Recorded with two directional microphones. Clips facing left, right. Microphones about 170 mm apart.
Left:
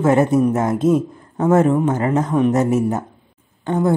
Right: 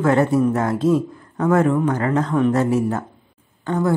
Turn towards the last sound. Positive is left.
turn(degrees=20)  # may be behind; listen again after turning